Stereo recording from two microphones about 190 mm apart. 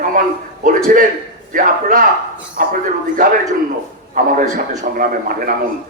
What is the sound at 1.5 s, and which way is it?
Speech, 45° right (ahead or behind).